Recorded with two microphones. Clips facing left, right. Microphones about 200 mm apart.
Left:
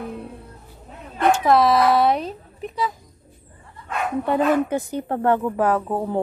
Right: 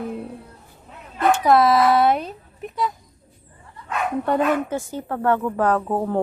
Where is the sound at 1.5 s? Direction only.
Centre (ahead or behind).